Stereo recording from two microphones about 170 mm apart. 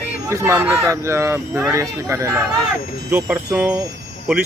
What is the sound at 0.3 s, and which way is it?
Speech, 15° right (ahead or behind).